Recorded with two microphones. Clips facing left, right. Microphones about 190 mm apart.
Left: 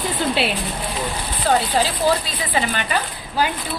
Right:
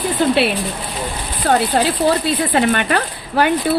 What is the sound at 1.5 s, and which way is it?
A woman's voice, 65° right (ahead or behind).